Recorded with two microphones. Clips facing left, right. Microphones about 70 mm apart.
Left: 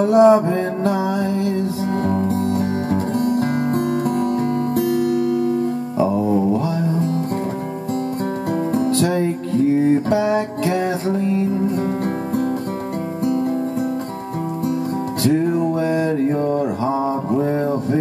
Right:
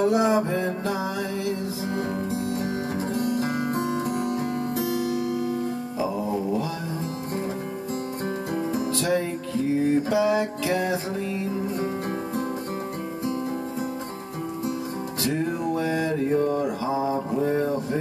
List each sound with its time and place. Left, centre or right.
0.1 s mantra: left
1.9 s music: left
8.7 s music: left
15.8 s mantra: left
16.3 s mantra: left
16.8 s mantra: left
17.3 s a sound: left